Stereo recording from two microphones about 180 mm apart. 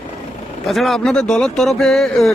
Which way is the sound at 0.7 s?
Centre (ahead or behind).